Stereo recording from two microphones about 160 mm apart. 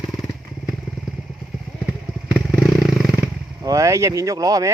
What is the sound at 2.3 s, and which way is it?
Motorcycle, 5° right (ahead or behind).